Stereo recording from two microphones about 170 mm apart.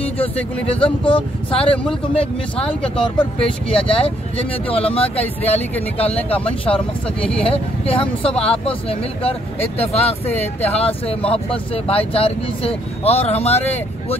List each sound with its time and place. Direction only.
0.7 s speech: 30° left (ahead or behind)
5.1 s speech: 10° left (ahead or behind)
5.9 s speech: 35° left (ahead or behind)
7.2 s speech: 5° left (ahead or behind)
7.4 s speech: 35° left (ahead or behind)